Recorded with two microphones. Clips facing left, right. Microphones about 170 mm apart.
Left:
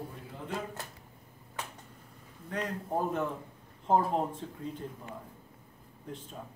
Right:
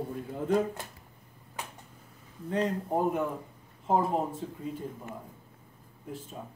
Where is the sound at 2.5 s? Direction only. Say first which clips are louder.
Right 5 dB; 25° right (ahead or behind).